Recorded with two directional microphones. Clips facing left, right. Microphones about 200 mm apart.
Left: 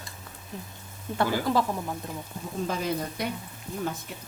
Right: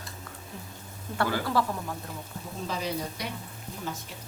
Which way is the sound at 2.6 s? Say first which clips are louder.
Left 2 dB; 50° left (ahead or behind).